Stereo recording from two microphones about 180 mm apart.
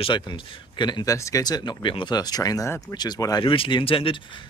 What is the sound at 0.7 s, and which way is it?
Speech, 25° left (ahead or behind).